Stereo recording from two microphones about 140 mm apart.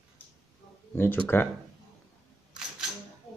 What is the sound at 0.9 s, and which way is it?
Speech, 15° left (ahead or behind).